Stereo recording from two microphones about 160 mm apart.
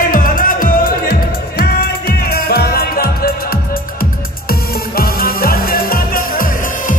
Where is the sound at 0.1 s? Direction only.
60° left (ahead or behind).